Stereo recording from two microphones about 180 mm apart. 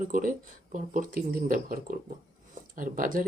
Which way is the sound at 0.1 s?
45° right (ahead or behind).